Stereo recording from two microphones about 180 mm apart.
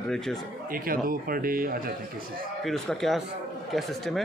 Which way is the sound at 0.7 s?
55° right (ahead or behind).